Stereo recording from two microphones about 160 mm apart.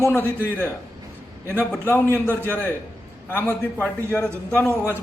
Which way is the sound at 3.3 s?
15° left (ahead or behind).